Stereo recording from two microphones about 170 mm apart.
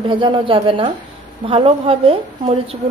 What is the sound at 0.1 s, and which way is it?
A woman's voice, 30° right (ahead or behind).